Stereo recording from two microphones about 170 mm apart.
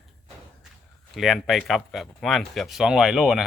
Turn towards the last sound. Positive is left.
turn(degrees=0)  # may be behind; listen again after turning